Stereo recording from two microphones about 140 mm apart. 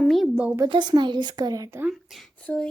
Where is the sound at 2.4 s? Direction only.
5° left (ahead or behind).